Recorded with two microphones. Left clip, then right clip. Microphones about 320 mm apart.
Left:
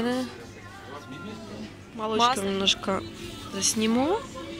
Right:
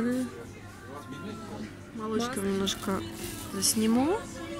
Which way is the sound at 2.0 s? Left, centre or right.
Centre.